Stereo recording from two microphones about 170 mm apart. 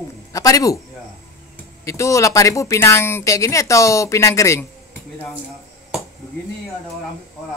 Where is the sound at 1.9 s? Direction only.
20° left (ahead or behind).